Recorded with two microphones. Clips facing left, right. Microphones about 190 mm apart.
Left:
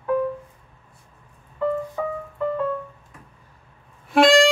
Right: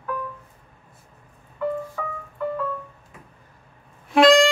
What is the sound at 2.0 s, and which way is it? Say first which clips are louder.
Music: left 5 dB; 25° left (ahead or behind).